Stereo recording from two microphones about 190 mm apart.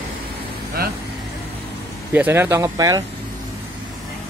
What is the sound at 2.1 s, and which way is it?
Speech, 10° right (ahead or behind).